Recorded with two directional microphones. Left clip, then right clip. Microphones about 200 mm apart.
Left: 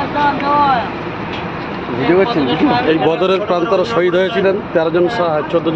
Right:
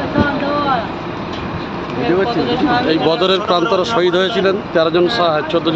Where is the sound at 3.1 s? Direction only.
10° right (ahead or behind).